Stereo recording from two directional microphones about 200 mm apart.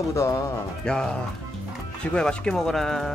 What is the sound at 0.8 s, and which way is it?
Speech, 5° left (ahead or behind).